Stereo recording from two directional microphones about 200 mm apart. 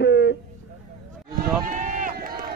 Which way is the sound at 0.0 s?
55° left (ahead or behind).